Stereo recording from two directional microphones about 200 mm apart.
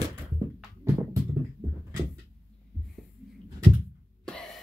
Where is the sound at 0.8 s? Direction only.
10° right (ahead or behind).